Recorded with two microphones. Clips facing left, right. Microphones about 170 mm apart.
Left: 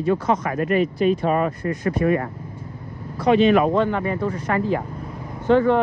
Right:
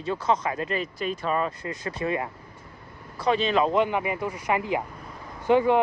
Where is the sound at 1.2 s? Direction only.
50° left (ahead or behind).